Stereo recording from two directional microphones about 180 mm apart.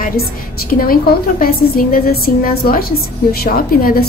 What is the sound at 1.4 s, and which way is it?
A woman's voice, 55° left (ahead or behind).